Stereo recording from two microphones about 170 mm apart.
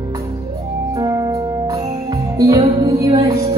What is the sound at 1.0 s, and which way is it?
Music, 20° right (ahead or behind).